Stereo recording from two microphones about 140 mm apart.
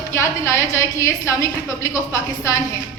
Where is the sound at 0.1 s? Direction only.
20° left (ahead or behind).